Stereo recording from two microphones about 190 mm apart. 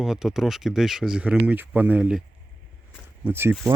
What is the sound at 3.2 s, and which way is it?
Speech, 10° right (ahead or behind).